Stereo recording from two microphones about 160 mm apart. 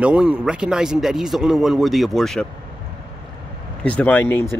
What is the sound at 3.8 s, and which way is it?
Speech, 10° left (ahead or behind).